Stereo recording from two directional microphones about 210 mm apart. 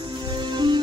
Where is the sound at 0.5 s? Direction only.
20° right (ahead or behind).